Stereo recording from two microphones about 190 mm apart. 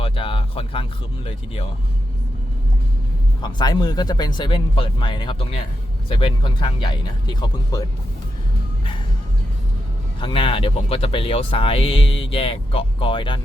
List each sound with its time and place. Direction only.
0.0 s speech: 30° left (ahead or behind)
3.4 s speech: 20° left (ahead or behind)
10.2 s speech: 25° left (ahead or behind)